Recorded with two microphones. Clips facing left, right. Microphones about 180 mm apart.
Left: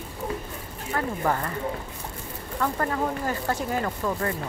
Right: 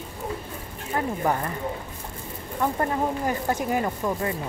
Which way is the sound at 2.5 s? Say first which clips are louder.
Right 2 dB; 20° right (ahead or behind).